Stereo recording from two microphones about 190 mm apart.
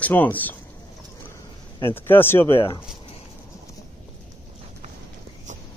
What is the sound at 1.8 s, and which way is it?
Speech, 10° left (ahead or behind).